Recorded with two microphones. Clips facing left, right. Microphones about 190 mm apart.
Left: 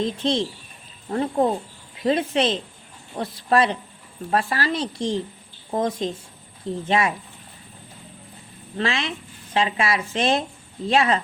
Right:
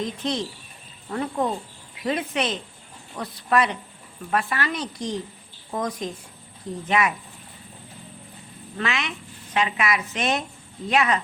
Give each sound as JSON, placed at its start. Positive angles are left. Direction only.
{"t": 0.0, "sound": "a woman's voice", "side_deg": 30}
{"t": 8.8, "sound": "a woman's voice", "side_deg": 30}